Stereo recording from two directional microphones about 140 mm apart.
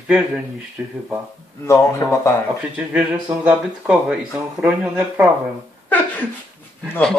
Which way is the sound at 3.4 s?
10° right (ahead or behind).